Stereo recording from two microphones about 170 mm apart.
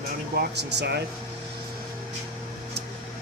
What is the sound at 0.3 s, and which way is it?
Speech, 80° right.